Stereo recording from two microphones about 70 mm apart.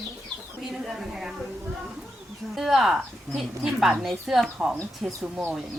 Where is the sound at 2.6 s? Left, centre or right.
Centre.